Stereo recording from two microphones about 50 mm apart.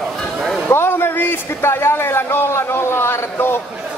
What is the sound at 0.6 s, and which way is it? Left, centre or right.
Speech, left.